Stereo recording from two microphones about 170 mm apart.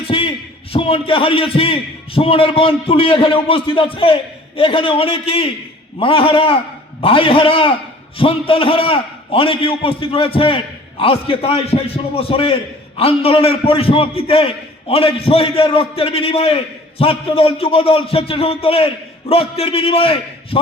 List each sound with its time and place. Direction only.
0.1 s a man's voice: 35° left (ahead or behind)